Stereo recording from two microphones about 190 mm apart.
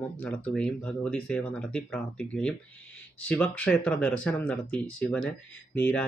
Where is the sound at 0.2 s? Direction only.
5° left (ahead or behind).